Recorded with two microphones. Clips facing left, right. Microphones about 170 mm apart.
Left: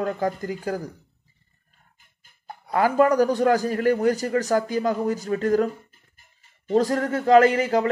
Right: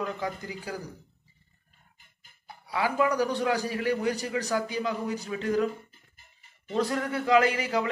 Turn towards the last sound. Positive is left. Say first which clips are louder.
# left 7 dB
turn(degrees=45)  # may be behind; listen again after turning